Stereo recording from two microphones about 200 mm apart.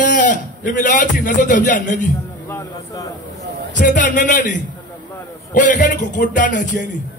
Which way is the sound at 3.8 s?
40° left (ahead or behind).